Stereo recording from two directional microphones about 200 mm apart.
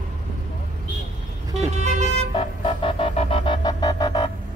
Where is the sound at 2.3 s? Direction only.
25° left (ahead or behind).